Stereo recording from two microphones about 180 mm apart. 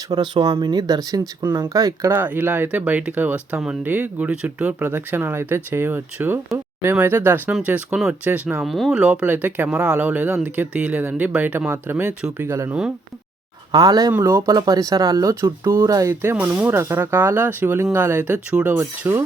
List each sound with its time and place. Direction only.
0.1 s speech: 25° right (ahead or behind)
13.7 s speech: 20° right (ahead or behind)